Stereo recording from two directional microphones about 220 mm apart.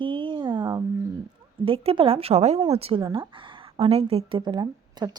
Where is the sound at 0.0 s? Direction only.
20° right (ahead or behind).